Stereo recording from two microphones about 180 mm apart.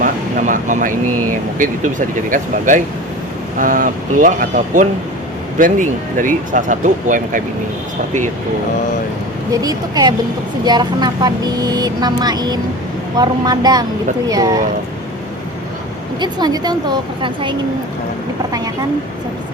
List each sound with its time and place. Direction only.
0.0 s speech: 45° right (ahead or behind)
9.5 s speech: 20° right (ahead or behind)
16.2 s speech: 25° right (ahead or behind)
18.5 s speech: 20° right (ahead or behind)